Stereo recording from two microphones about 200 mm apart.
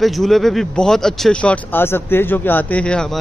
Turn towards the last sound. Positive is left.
turn(degrees=5)  # may be behind; listen again after turning